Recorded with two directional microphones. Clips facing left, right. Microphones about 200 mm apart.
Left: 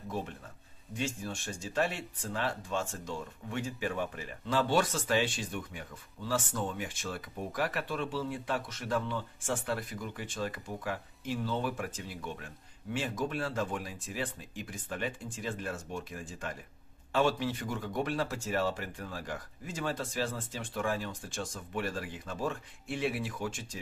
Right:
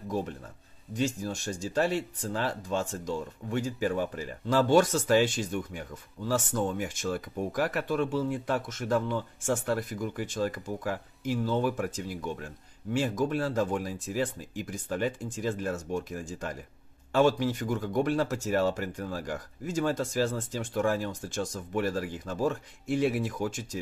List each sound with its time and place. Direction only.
0.9 s speech: 40° right (ahead or behind)